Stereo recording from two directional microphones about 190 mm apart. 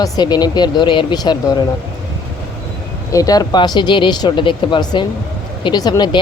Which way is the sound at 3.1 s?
20° left (ahead or behind).